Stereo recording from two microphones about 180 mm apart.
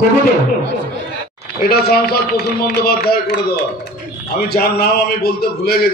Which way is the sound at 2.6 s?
60° left (ahead or behind).